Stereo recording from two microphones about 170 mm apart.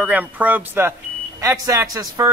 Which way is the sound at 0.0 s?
10° right (ahead or behind).